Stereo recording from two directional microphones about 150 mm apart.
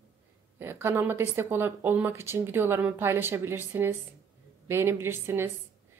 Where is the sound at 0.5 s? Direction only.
15° right (ahead or behind).